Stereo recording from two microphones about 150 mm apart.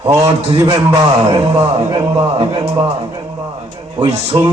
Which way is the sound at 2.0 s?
30° right (ahead or behind).